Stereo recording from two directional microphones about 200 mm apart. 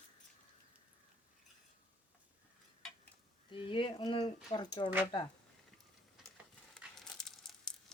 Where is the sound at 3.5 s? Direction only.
25° left (ahead or behind).